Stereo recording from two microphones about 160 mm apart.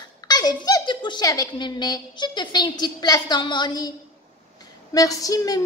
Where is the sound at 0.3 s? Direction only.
25° left (ahead or behind).